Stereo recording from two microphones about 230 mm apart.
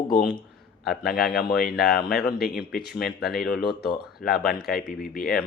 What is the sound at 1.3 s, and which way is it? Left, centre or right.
Speech, left.